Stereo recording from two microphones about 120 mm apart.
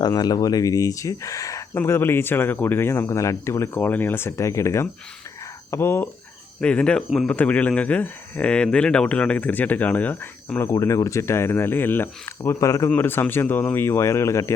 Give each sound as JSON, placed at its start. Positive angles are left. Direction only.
{"t": 0.0, "sound": "speech", "side_deg": 35}
{"t": 6.6, "sound": "speech", "side_deg": 10}